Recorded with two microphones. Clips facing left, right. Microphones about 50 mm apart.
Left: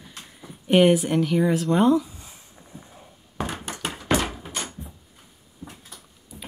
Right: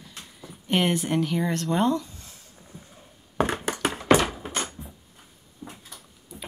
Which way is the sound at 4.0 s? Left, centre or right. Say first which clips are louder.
Right 4 dB; right.